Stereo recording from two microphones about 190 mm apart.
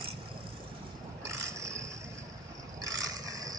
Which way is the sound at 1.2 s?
15° right (ahead or behind).